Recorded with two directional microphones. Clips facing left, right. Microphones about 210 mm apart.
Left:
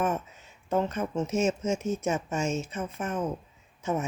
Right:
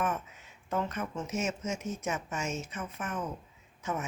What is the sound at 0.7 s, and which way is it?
A woman's voice, 30° left (ahead or behind).